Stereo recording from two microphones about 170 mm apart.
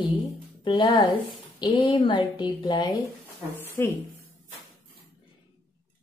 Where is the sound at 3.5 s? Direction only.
10° left (ahead or behind).